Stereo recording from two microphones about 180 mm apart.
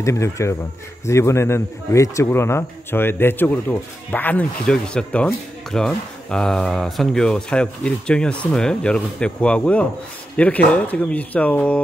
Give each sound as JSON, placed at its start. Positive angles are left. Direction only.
{"t": 0.0, "sound": "a man's voice", "side_deg": 15}